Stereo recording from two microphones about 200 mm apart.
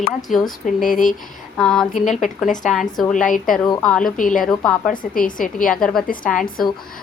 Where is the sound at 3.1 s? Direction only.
40° left (ahead or behind).